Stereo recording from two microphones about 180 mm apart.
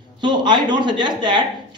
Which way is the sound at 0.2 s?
25° right (ahead or behind).